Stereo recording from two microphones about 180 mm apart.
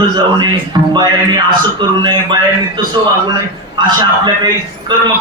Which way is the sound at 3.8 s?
25° right (ahead or behind).